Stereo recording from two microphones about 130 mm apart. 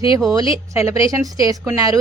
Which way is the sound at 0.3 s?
25° right (ahead or behind).